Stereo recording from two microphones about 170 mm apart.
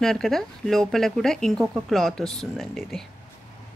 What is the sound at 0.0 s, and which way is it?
Speech, centre (ahead or behind).